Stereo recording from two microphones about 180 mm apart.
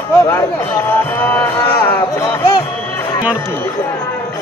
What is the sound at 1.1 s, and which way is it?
Music, 10° left (ahead or behind).